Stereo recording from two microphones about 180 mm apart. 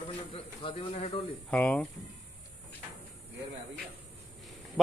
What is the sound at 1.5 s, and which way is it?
Speech, 10° left (ahead or behind).